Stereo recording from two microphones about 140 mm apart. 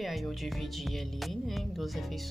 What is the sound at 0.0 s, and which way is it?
Speech, centre (ahead or behind).